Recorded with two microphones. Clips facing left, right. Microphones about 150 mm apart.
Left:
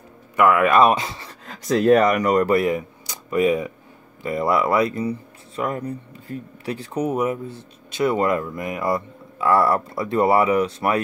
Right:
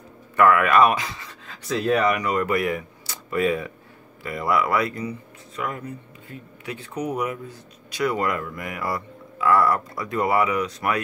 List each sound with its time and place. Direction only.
0.4 s speech: 20° left (ahead or behind)
1.4 s speech: 40° left (ahead or behind); by 5.1 s 25° left (ahead or behind)
5.6 s speech: 35° left (ahead or behind)